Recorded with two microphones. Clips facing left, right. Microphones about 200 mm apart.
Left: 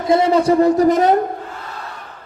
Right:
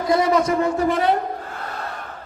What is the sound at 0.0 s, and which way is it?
A man's voice, 25° left (ahead or behind).